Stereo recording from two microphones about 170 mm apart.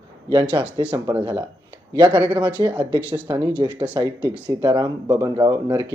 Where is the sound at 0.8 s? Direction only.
15° right (ahead or behind).